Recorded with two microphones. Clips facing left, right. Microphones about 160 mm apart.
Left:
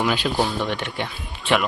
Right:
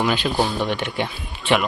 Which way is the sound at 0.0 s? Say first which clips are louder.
Right 1 dB; centre (ahead or behind).